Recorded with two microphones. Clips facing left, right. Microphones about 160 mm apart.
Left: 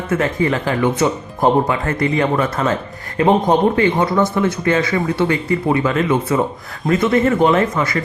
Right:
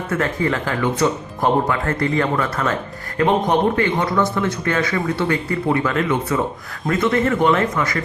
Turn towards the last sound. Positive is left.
turn(degrees=25)  # may be behind; listen again after turning